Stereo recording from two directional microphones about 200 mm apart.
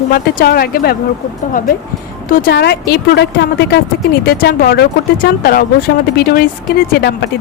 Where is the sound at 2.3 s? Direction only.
50° left (ahead or behind).